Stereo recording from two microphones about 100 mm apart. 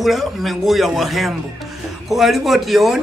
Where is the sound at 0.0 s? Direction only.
Centre (ahead or behind).